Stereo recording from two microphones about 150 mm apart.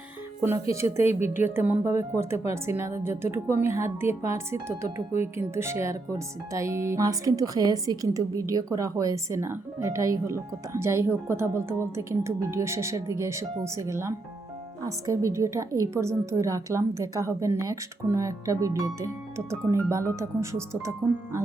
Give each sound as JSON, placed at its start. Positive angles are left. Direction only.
{"t": 0.7, "sound": "speech", "side_deg": -15}